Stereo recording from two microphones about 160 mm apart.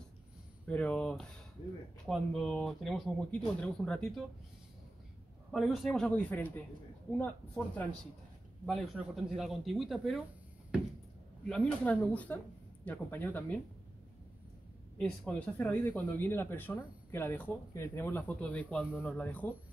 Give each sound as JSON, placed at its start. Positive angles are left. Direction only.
{"t": 0.7, "sound": "speech", "side_deg": 10}
{"t": 5.5, "sound": "speech", "side_deg": 0}
{"t": 11.4, "sound": "speech", "side_deg": 10}
{"t": 15.0, "sound": "speech", "side_deg": 5}